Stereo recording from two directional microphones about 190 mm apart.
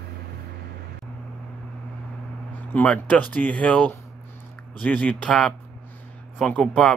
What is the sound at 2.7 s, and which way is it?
Speech, 5° left (ahead or behind).